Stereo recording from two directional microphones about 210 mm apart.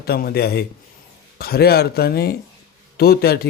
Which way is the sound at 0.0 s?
50° left (ahead or behind).